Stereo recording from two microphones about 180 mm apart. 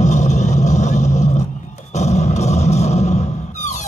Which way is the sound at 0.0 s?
40° left (ahead or behind).